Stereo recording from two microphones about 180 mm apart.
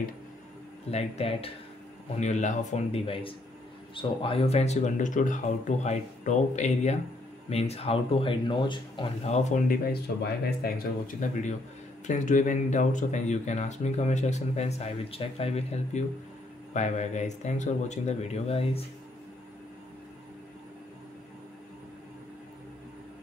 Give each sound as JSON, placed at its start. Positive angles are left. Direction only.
{"t": 0.8, "sound": "speech", "side_deg": 35}
{"t": 11.2, "sound": "speech", "side_deg": 45}